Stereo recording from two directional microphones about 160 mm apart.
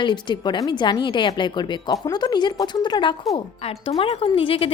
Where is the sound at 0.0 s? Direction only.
30° left (ahead or behind).